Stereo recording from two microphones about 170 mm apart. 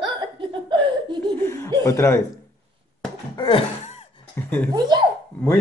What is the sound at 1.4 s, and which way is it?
Speech, 15° left (ahead or behind).